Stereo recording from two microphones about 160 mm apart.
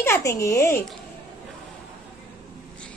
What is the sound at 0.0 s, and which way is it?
Speech, 15° left (ahead or behind).